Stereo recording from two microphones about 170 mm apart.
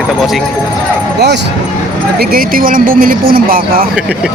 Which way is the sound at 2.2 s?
60° right (ahead or behind).